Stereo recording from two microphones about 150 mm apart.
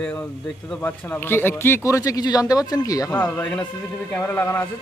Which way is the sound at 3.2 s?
10° left (ahead or behind).